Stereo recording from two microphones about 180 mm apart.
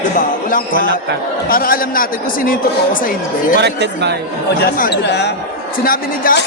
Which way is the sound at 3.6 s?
70° right (ahead or behind).